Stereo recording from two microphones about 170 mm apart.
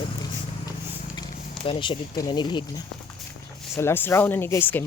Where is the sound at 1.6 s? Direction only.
30° left (ahead or behind).